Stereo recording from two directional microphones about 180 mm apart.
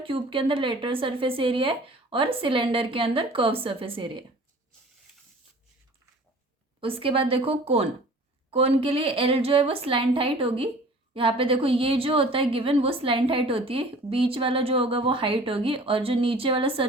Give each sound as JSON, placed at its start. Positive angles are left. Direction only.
{"t": 0.0, "sound": "speech", "side_deg": -30}
{"t": 6.7, "sound": "a woman's voice", "side_deg": -30}